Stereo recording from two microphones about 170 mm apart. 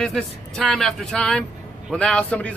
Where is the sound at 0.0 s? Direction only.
Centre (ahead or behind).